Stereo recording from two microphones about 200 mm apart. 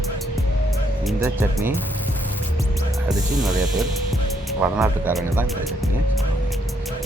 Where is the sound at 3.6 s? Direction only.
5° right (ahead or behind).